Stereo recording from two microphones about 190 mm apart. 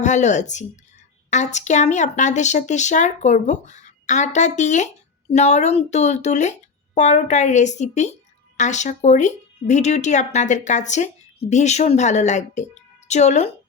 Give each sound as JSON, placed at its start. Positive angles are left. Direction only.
{"t": 0.0, "sound": "a woman's voice", "side_deg": 40}